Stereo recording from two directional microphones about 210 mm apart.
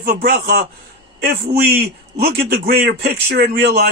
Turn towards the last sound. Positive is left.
turn(degrees=-50)  # may be behind; listen again after turning